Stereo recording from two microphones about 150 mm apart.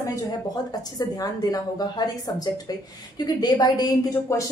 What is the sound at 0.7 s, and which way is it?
A woman's voice, 25° left (ahead or behind).